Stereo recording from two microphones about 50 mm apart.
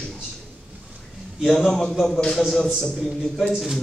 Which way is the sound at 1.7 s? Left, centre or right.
Centre.